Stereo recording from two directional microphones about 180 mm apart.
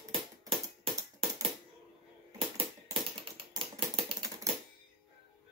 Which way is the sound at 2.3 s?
30° right (ahead or behind).